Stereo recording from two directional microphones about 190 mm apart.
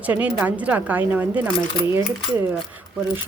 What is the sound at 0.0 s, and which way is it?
Speech, 10° right (ahead or behind).